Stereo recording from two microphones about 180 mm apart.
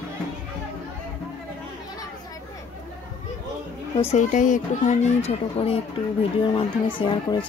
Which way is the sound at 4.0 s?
40° left (ahead or behind).